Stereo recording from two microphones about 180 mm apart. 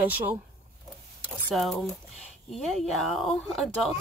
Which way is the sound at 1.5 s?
Centre (ahead or behind).